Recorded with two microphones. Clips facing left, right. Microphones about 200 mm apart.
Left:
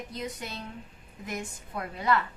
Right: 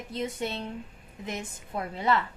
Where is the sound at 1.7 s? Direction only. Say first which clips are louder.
Right 1 dB; 25° right (ahead or behind).